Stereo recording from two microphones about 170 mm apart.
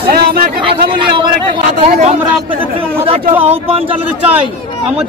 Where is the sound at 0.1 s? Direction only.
60° right (ahead or behind).